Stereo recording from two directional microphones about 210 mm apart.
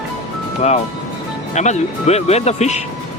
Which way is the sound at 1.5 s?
35° left (ahead or behind).